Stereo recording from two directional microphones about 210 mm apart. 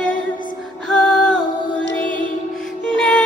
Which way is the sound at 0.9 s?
5° left (ahead or behind).